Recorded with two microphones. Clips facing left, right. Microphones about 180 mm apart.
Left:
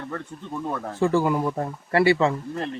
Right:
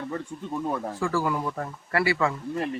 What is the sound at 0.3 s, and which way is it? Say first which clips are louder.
Speech: right 1 dB; 10° right (ahead or behind).